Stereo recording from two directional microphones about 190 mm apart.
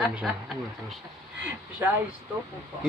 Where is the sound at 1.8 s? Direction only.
10° right (ahead or behind).